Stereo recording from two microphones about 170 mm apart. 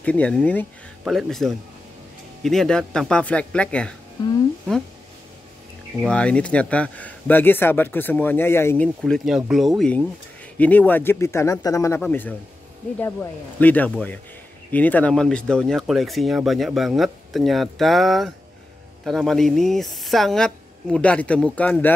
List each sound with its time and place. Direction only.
0.0 s speech: 5° left (ahead or behind)
6.0 s speech: 5° left (ahead or behind)
8.8 s speech: 5° left (ahead or behind)